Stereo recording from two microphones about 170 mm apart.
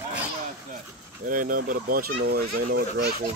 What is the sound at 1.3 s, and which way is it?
Speech, 50° right (ahead or behind).